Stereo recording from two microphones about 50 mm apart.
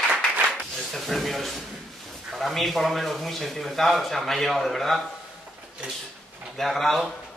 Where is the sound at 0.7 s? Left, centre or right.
Centre.